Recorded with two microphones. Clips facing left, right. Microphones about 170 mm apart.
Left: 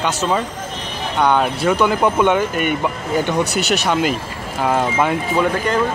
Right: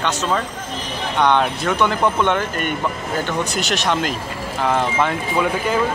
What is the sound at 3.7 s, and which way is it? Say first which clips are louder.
A man's voice: left 3 dB; 5° left (ahead or behind).